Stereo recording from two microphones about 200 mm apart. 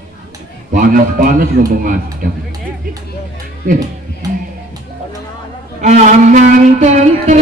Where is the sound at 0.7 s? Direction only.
40° right (ahead or behind).